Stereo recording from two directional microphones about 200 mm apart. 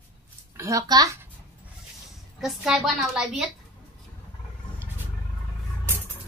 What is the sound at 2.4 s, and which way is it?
A woman's voice, centre (ahead or behind).